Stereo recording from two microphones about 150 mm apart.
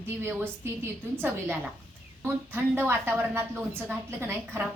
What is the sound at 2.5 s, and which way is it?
A woman's voice, 15° right (ahead or behind).